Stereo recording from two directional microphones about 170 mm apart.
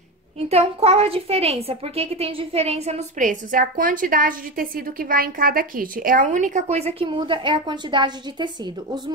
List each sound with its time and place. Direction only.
0.5 s a woman's voice: 35° right (ahead or behind)
7.0 s a woman's voice: 30° right (ahead or behind)